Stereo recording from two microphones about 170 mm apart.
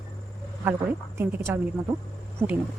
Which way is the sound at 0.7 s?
15° right (ahead or behind).